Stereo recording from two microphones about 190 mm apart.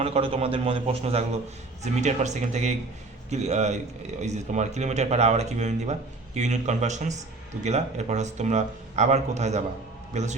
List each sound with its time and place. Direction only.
0.0 s a man's voice: 30° right (ahead or behind)